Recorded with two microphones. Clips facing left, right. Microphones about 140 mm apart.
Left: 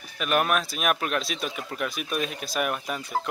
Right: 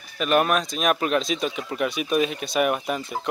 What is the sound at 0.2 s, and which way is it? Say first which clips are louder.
Speech: right 4 dB; centre (ahead or behind).